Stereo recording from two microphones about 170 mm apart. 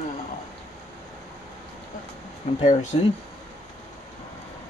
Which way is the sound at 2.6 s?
40° left (ahead or behind).